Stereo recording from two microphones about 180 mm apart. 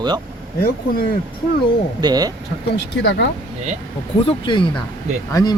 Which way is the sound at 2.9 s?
75° left (ahead or behind).